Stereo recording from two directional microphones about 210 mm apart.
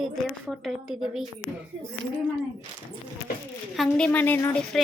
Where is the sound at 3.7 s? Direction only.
5° left (ahead or behind).